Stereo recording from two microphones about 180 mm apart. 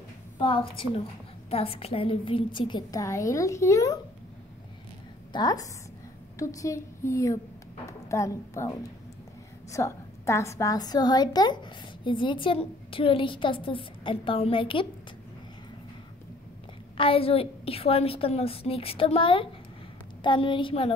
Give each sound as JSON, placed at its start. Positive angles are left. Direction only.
{"t": 0.4, "sound": "a woman's voice", "side_deg": 30}
{"t": 5.3, "sound": "a woman's voice", "side_deg": 25}
{"t": 16.9, "sound": "a woman's voice", "side_deg": 30}